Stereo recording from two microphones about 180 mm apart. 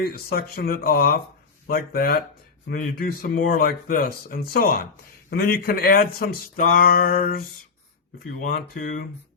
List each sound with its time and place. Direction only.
0.0 s speech: 60° left (ahead or behind)
8.4 s speech: 55° left (ahead or behind)